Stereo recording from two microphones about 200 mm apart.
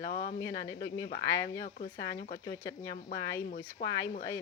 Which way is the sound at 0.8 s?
70° left (ahead or behind).